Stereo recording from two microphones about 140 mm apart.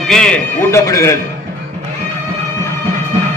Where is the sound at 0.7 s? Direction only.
20° left (ahead or behind).